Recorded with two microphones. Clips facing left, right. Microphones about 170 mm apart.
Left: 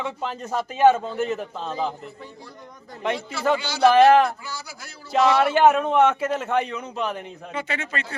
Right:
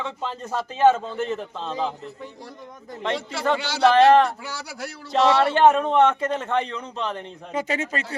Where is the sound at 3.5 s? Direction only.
75° right (ahead or behind).